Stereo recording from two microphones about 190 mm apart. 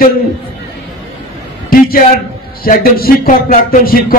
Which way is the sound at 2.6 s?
50° left (ahead or behind).